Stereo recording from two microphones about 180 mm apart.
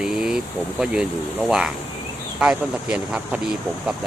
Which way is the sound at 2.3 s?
5° right (ahead or behind).